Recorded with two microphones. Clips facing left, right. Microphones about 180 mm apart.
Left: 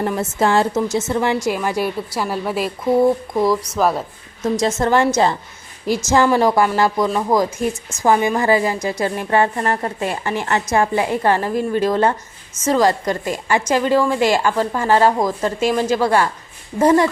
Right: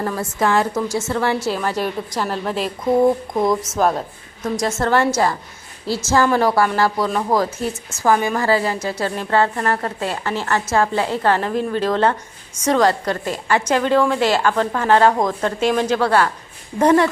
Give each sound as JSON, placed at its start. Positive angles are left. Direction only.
{"t": 0.0, "sound": "a woman's voice", "side_deg": 25}
{"t": 3.4, "sound": "a woman's voice", "side_deg": -20}
{"t": 3.8, "sound": "a woman's voice", "side_deg": 5}
{"t": 4.4, "sound": "a woman's voice", "side_deg": 25}